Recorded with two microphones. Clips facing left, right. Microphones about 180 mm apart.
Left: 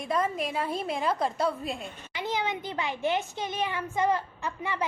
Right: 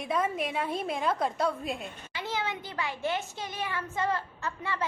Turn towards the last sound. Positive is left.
turn(degrees=15)  # may be behind; listen again after turning